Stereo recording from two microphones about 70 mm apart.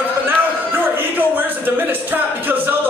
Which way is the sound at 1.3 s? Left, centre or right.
Right.